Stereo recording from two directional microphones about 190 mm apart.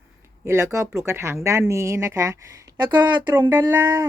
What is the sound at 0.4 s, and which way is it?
A woman's voice, 15° right (ahead or behind).